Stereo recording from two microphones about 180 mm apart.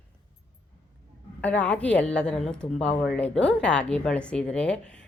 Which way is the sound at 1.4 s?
5° left (ahead or behind).